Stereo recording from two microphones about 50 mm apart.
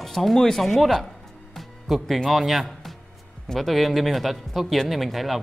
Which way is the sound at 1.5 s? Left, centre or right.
Centre.